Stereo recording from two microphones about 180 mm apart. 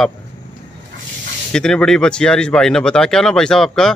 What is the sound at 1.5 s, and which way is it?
Speech, 5° left (ahead or behind).